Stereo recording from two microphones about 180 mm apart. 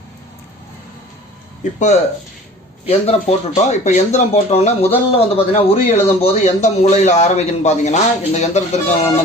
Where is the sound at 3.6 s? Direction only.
40° left (ahead or behind).